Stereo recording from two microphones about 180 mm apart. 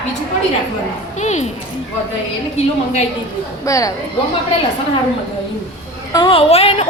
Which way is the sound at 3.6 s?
20° left (ahead or behind).